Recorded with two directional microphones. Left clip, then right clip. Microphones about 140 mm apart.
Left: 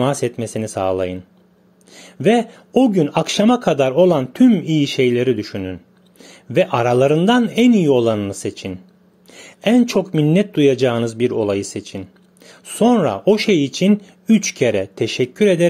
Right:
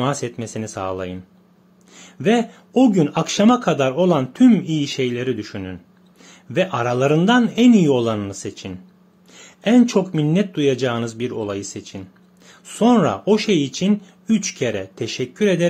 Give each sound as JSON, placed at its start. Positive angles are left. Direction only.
{"t": 0.0, "sound": "speech", "side_deg": 35}